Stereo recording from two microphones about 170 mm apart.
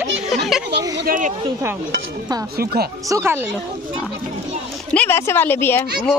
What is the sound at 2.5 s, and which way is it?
Speech, 65° right (ahead or behind).